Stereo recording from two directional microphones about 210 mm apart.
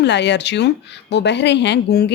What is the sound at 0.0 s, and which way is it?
Speech, 55° left (ahead or behind).